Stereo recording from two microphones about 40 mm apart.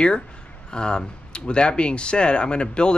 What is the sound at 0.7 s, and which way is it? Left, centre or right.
Speech, left.